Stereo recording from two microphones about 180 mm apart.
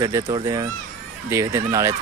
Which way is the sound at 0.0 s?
25° right (ahead or behind).